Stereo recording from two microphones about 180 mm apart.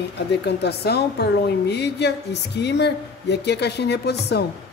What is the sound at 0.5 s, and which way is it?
A woman's voice, 65° left (ahead or behind).